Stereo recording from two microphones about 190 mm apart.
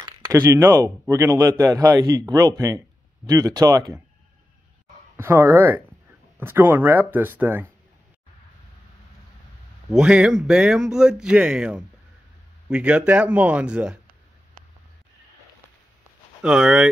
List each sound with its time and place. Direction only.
0.0 s speech: 15° right (ahead or behind)
5.1 s speech: 10° right (ahead or behind)
9.8 s speech: 5° right (ahead or behind)
16.4 s speech: 5° right (ahead or behind)